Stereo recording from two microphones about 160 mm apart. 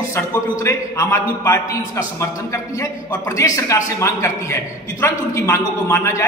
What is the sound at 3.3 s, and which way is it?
Speech, 20° left (ahead or behind).